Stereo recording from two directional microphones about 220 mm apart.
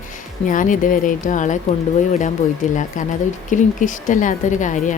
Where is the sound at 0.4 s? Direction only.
35° left (ahead or behind).